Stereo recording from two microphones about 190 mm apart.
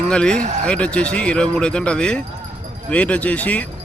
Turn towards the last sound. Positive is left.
turn(degrees=5)  # may be behind; listen again after turning